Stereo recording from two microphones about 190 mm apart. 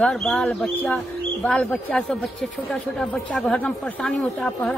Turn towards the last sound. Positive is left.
turn(degrees=5)  # may be behind; listen again after turning